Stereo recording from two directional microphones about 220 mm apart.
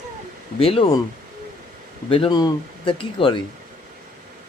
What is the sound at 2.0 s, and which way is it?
Speech, 25° left (ahead or behind).